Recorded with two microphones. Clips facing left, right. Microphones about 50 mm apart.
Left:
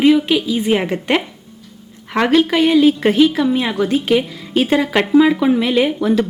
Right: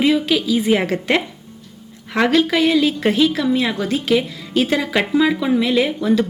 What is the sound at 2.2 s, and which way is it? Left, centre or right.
A woman's voice, centre.